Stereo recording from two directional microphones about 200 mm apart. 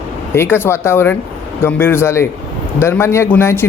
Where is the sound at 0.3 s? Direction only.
10° left (ahead or behind).